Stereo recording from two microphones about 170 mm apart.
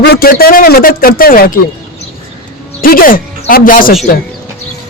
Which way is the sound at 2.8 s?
55° left (ahead or behind).